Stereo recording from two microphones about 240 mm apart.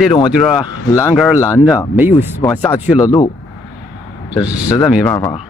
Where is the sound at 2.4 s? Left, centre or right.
Centre.